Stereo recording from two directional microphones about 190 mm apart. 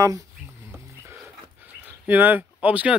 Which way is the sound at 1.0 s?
10° right (ahead or behind).